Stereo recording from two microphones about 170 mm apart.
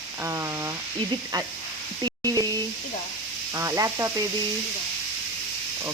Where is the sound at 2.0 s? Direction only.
25° right (ahead or behind).